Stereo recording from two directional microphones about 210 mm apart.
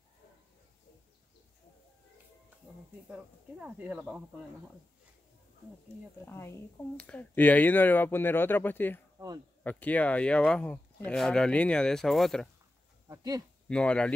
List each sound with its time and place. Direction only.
3.1 s speech: 5° right (ahead or behind)
6.2 s speech: 10° left (ahead or behind)
13.1 s speech: 15° right (ahead or behind)
13.7 s speech: 5° left (ahead or behind)